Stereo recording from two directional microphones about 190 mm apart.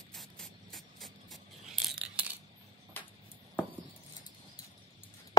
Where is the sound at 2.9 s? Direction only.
10° left (ahead or behind).